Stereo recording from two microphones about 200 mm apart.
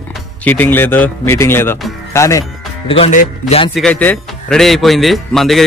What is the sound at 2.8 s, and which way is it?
Speech, 30° left (ahead or behind).